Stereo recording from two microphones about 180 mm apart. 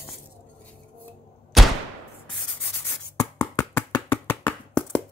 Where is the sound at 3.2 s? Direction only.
20° left (ahead or behind).